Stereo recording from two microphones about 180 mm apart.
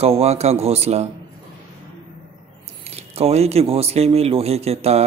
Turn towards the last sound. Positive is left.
turn(degrees=-35)  # may be behind; listen again after turning